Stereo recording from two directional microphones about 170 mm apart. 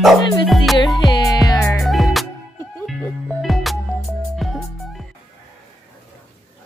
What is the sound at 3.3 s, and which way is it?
Music, centre (ahead or behind).